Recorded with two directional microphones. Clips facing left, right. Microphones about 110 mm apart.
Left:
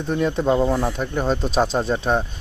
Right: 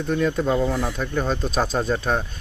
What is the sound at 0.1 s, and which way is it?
Speech, 25° left (ahead or behind).